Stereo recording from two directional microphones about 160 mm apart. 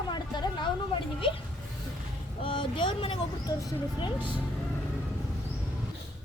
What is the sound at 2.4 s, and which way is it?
A woman's voice, 35° left (ahead or behind).